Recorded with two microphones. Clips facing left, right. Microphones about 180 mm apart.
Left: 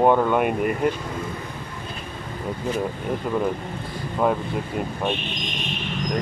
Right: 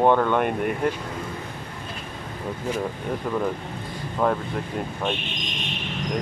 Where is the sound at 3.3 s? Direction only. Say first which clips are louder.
Left 2 dB; 10° left (ahead or behind).